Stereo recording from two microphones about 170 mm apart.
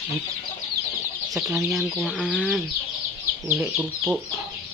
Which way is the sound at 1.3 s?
Centre (ahead or behind).